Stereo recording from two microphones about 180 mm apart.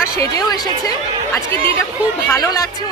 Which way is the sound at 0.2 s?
20° left (ahead or behind).